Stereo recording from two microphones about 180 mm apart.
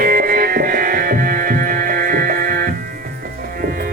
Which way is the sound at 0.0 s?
55° right (ahead or behind).